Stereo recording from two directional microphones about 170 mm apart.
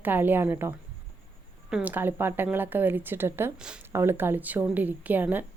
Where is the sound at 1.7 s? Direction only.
10° right (ahead or behind).